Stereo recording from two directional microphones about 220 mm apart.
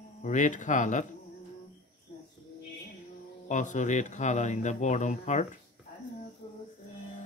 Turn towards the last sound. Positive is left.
turn(degrees=20)  # may be behind; listen again after turning